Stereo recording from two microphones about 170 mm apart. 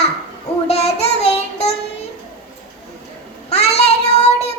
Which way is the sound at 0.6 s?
40° left (ahead or behind).